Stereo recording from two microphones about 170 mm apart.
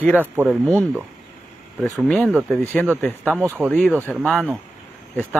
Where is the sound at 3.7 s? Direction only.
5° left (ahead or behind).